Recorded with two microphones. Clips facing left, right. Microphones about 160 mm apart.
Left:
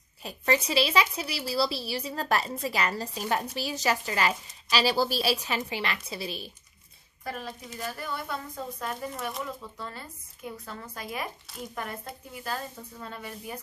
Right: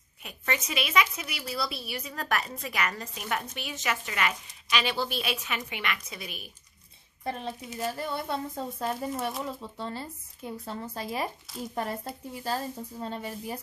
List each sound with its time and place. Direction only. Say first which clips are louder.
0.2 s a woman's voice: left 6 dB; 30° left (ahead or behind)
7.2 s speech: right 3 dB; 25° right (ahead or behind)